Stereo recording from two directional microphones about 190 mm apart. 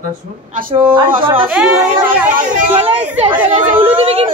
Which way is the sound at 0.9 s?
25° right (ahead or behind).